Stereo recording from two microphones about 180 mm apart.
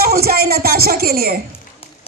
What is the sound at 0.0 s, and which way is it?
Speech, 60° right (ahead or behind).